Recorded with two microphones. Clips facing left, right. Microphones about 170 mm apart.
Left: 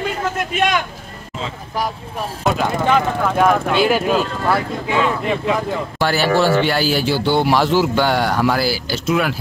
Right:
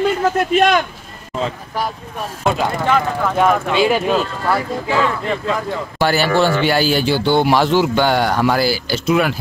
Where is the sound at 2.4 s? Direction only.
5° right (ahead or behind).